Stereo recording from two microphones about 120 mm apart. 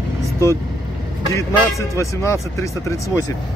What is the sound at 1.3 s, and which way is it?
Speech, 25° left (ahead or behind).